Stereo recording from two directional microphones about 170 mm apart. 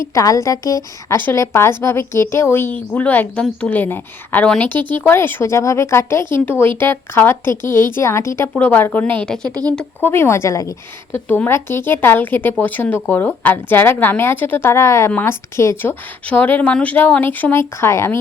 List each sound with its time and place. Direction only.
0.0 s a woman's voice: 20° left (ahead or behind)